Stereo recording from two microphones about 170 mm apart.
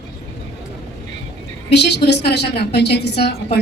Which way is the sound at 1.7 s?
85° left.